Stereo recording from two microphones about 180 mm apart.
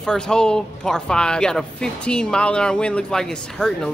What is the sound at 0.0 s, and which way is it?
Speech, 5° left (ahead or behind).